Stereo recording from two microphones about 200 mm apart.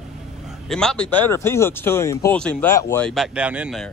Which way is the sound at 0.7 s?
5° left (ahead or behind).